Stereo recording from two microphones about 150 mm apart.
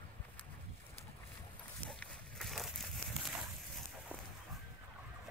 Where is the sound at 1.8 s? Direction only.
Centre (ahead or behind).